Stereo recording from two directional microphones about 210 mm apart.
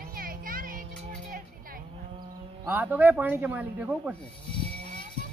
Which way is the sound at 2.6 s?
10° right (ahead or behind).